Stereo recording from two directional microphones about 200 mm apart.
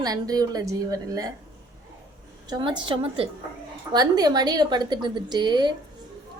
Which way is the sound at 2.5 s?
25° right (ahead or behind).